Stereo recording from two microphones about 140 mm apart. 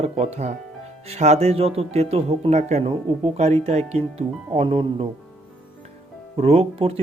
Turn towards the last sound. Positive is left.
turn(degrees=-45)  # may be behind; listen again after turning